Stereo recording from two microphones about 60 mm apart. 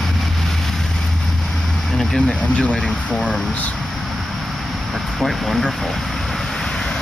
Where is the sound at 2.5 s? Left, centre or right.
Centre.